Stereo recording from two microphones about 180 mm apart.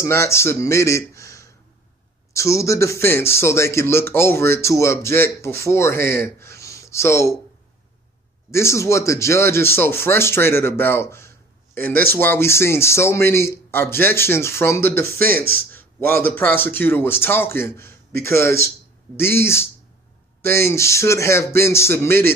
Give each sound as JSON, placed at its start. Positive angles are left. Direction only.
{"t": 0.0, "sound": "a man's voice", "side_deg": 15}
{"t": 8.5, "sound": "speech", "side_deg": 15}
{"t": 15.2, "sound": "speech", "side_deg": -55}
{"t": 16.3, "sound": "speech", "side_deg": 10}